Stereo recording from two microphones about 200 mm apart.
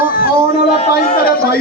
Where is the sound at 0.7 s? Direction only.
30° left (ahead or behind).